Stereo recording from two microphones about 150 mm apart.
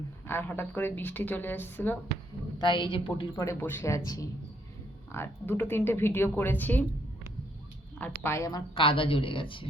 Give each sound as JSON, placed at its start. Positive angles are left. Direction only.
{"t": 0.3, "sound": "a woman's voice", "side_deg": 15}
{"t": 2.6, "sound": "a woman's voice", "side_deg": 30}
{"t": 3.4, "sound": "a woman's voice", "side_deg": 15}
{"t": 7.9, "sound": "a woman's voice", "side_deg": 10}